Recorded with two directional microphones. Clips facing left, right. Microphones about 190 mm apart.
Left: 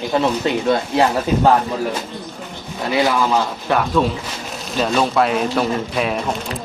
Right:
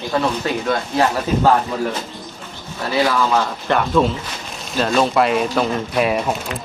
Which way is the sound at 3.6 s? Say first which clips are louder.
Right 2 dB; centre (ahead or behind).